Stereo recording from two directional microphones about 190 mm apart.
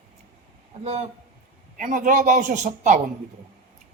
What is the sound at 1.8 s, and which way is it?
Speech, 45° right (ahead or behind).